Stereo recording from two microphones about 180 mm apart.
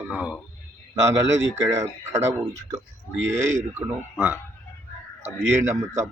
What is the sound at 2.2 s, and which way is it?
Speech, 20° right (ahead or behind).